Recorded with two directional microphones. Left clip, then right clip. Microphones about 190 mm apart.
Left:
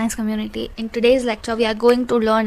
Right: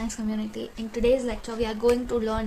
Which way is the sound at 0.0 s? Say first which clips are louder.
Left 8 dB; 40° left (ahead or behind).